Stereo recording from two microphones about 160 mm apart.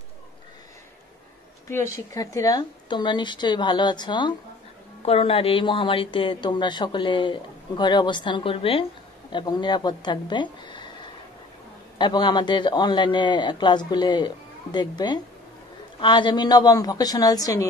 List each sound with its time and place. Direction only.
1.7 s a man's voice: 20° left (ahead or behind)
12.0 s a man's voice: 25° left (ahead or behind)